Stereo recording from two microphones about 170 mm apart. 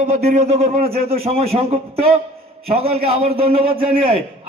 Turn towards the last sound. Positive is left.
turn(degrees=-30)  # may be behind; listen again after turning